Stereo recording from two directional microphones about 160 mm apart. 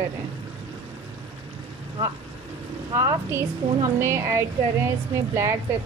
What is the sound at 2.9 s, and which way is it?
A woman's voice, 20° right (ahead or behind).